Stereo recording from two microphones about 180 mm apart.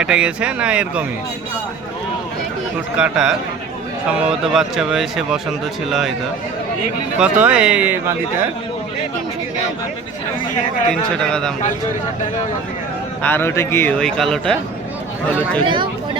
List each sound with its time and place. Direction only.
0.0 s speech: 5° right (ahead or behind)
3.0 s speech: 5° right (ahead or behind)
7.2 s speech: 5° right (ahead or behind)
11.2 s speech: 5° left (ahead or behind)
13.2 s a man's voice: 15° left (ahead or behind)
14.0 s speech: centre (ahead or behind)
15.6 s speech: 25° right (ahead or behind)